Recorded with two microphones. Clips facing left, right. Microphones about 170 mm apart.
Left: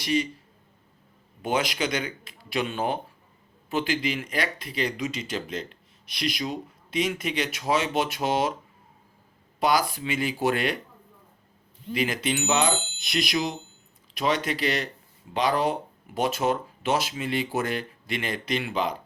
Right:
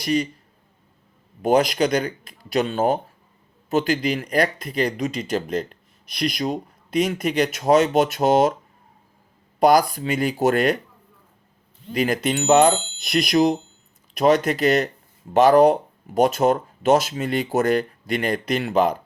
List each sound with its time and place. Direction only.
0.0 s a man's voice: 40° right (ahead or behind)
1.4 s a man's voice: 40° right (ahead or behind)
9.6 s speech: 45° right (ahead or behind)
11.9 s speech: 45° right (ahead or behind)